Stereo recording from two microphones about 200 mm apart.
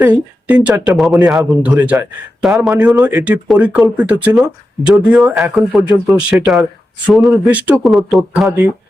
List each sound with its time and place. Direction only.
0.0 s speech: 5° right (ahead or behind)
2.7 s speech: 20° right (ahead or behind)
3.0 s speech: 10° right (ahead or behind)